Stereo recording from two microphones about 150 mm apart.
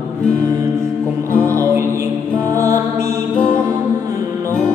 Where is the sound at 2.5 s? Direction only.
20° right (ahead or behind).